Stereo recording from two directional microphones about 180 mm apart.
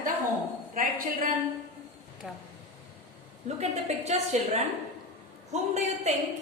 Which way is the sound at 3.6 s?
40° right (ahead or behind).